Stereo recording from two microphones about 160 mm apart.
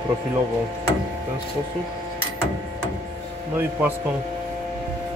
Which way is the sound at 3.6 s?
10° right (ahead or behind).